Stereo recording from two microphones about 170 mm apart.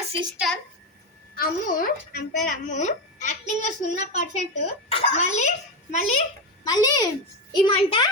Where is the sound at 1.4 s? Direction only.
60° left (ahead or behind); by 5.5 s 40° left (ahead or behind).